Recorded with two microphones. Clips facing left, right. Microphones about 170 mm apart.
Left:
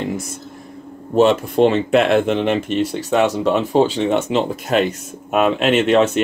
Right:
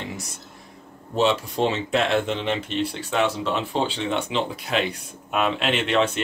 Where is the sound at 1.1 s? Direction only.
50° left (ahead or behind).